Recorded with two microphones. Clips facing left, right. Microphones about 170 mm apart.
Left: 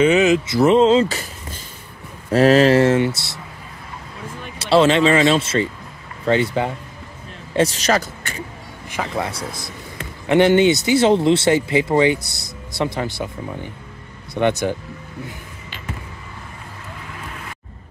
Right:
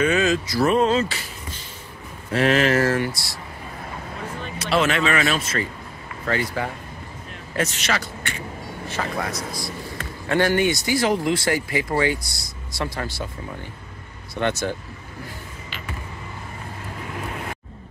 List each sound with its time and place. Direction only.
0.0 s speech: 20° left (ahead or behind)
1.0 s a sound: 45° left (ahead or behind)
2.3 s speech: 35° left (ahead or behind)
4.6 s speech: 30° left (ahead or behind)
7.5 s speech: 35° left (ahead or behind)
9.2 s speech: 25° left (ahead or behind)